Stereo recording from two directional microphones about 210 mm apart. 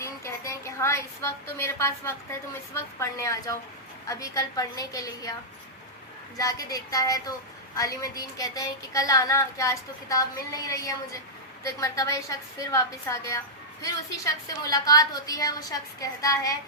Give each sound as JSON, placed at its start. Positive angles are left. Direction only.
{"t": 0.0, "sound": "a sound", "side_deg": 15}
{"t": 2.7, "sound": "child singing", "side_deg": 15}
{"t": 6.3, "sound": "child singing", "side_deg": 15}